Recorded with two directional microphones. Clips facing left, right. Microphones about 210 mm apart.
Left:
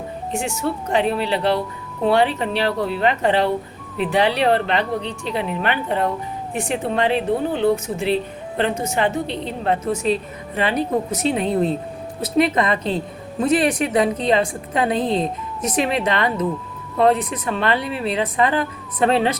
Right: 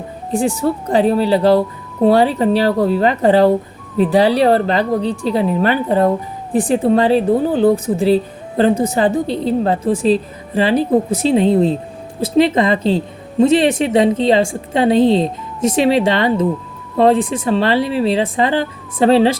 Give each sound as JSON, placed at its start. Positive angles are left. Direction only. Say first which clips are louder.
{"t": 0.3, "sound": "a woman's voice", "louder": "right 8 dB", "side_deg": -35}